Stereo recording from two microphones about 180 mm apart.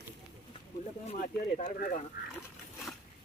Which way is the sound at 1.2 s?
45° left (ahead or behind).